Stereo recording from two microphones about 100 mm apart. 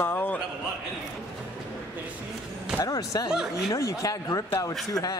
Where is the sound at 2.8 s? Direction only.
40° left (ahead or behind).